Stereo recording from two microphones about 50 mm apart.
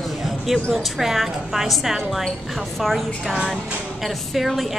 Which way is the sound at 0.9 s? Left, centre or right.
Centre.